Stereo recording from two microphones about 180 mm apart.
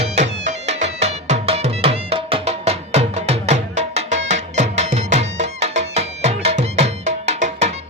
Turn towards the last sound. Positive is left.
turn(degrees=-35)  # may be behind; listen again after turning